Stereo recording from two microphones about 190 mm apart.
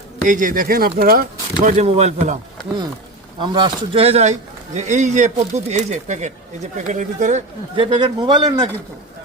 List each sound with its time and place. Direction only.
0.3 s speech: 45° right (ahead or behind)
1.8 s a man's voice: 35° right (ahead or behind)
3.4 s a man's voice: 25° right (ahead or behind); by 7.4 s 40° right (ahead or behind)
7.8 s a man's voice: 25° right (ahead or behind)